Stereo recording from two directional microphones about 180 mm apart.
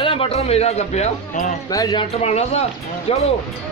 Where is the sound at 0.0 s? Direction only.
30° left (ahead or behind).